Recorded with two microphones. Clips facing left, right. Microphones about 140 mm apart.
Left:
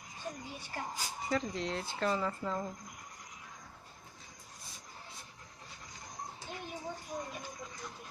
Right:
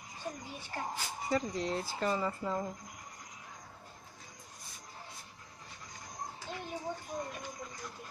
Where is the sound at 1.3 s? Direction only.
5° right (ahead or behind).